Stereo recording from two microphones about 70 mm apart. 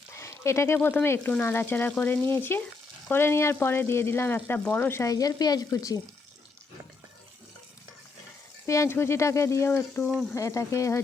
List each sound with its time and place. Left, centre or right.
0.1 s a sound: left
1.0 s speech: left
4.9 s speech: left
8.6 s speech: left
8.9 s speech: left
10.3 s speech: left